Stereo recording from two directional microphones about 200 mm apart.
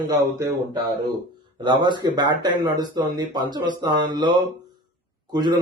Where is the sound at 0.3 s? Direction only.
15° right (ahead or behind).